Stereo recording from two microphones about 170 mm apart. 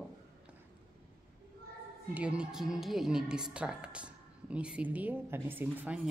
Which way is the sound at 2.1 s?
5° right (ahead or behind).